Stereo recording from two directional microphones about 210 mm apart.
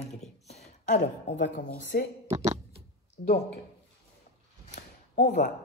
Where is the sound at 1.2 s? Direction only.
55° left (ahead or behind).